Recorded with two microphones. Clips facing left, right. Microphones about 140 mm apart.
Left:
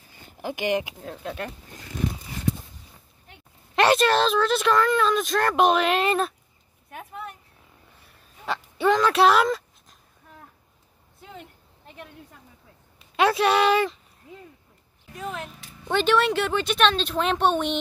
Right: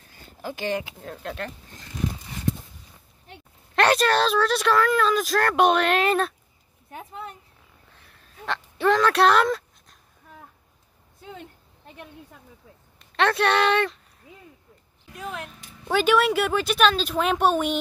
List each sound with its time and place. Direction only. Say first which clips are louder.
0.4 s speech: left 3 dB; 15° left (ahead or behind)
1.0 s speech: left 1 dB; centre (ahead or behind)
3.7 s speech: left 1 dB; centre (ahead or behind)
6.9 s a sound: even; 25° right (ahead or behind)
8.0 s a sound: right 1 dB; 5° left (ahead or behind)
13.0 s speech: left 1 dB; 5° left (ahead or behind)